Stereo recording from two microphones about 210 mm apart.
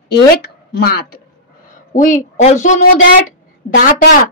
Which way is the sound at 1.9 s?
35° left (ahead or behind).